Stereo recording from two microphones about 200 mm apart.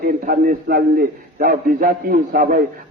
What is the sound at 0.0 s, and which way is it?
A man's voice, 45° right (ahead or behind).